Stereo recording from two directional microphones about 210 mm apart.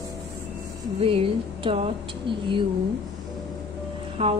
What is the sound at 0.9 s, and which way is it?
Speech, 25° right (ahead or behind).